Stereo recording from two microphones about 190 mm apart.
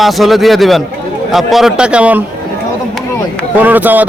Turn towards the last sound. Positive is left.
turn(degrees=-10)  # may be behind; listen again after turning